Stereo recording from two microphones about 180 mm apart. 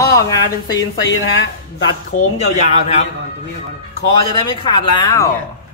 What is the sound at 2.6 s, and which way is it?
Speech, 40° left (ahead or behind).